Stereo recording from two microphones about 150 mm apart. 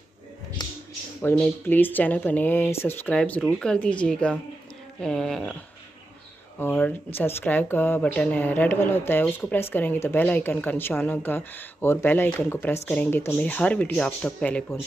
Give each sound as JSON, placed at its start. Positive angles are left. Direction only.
{"t": 0.6, "sound": "a sound", "side_deg": 30}
{"t": 1.2, "sound": "speech", "side_deg": 10}
{"t": 6.6, "sound": "speech", "side_deg": 15}